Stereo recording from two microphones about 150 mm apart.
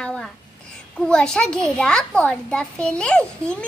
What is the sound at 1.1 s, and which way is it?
A child's voice, 5° left (ahead or behind).